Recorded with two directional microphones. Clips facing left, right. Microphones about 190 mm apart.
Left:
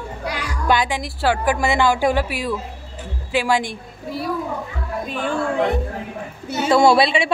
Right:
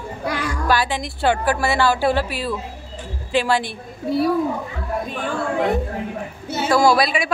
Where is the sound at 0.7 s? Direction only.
20° left (ahead or behind).